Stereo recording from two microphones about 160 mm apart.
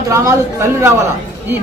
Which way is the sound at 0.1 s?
20° right (ahead or behind).